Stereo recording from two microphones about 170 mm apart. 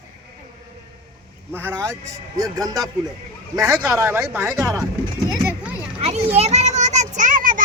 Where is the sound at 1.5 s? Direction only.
15° right (ahead or behind).